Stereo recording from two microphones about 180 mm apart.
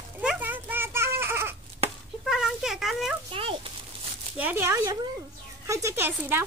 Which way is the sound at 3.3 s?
30° right (ahead or behind).